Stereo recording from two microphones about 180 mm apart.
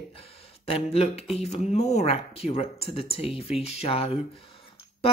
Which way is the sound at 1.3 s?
35° left (ahead or behind).